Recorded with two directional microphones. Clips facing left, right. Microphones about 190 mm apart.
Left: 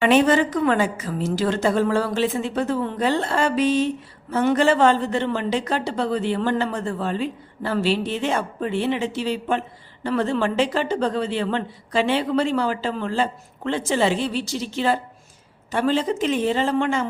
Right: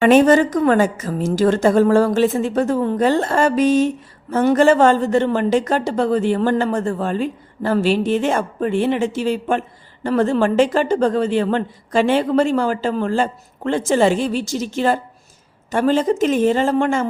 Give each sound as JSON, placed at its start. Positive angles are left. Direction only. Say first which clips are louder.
{"t": 0.0, "sound": "a woman's voice", "louder": "right 5 dB", "side_deg": -45}